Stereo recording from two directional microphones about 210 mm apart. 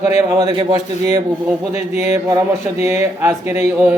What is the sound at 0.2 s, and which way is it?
A man's voice, 15° right (ahead or behind).